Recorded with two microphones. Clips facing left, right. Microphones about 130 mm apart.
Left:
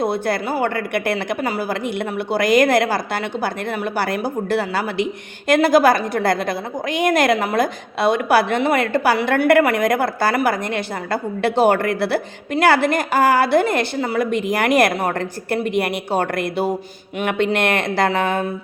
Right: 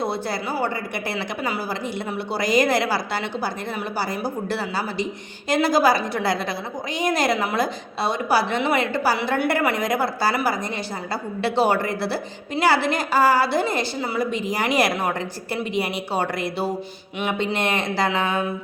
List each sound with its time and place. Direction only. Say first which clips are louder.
0.0 s a woman's voice: left 5 dB; 55° left (ahead or behind)